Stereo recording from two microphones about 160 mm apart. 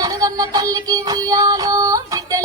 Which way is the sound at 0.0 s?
25° right (ahead or behind).